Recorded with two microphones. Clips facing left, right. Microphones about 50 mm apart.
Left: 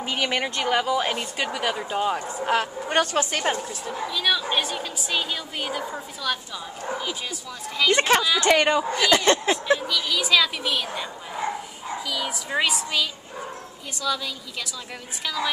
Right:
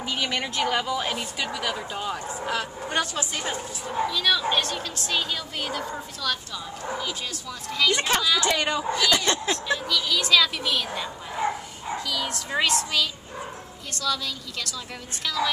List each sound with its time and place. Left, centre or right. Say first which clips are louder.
0.0 s a woman's voice: left 3 dB; left
1.4 s speech: left 4 dB; left
2.1 s a woman's voice: left 5 dB; left
4.1 s a woman's voice: left 1 dB; centre
7.9 s a woman's voice: left 6 dB; left
8.7 s speech: left 3 dB; left
9.5 s a woman's voice: left 3 dB; centre
12.1 s a woman's voice: left 2 dB; centre